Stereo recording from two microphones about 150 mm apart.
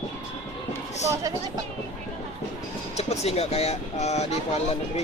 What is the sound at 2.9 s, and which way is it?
Speech, 45° left (ahead or behind).